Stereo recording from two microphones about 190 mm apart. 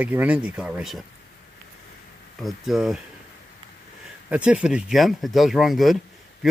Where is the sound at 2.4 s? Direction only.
Centre (ahead or behind).